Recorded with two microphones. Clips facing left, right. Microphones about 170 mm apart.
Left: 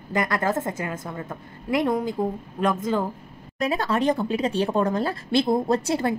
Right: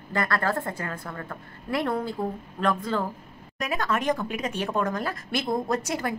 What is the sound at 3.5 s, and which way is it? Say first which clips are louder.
Speech: left 4 dB; 30° left (ahead or behind).